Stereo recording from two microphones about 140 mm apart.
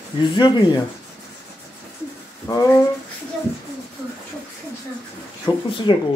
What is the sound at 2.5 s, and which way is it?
Speech, 25° left (ahead or behind).